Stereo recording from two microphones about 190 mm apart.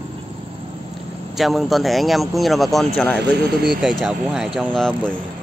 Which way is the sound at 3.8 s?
Centre (ahead or behind).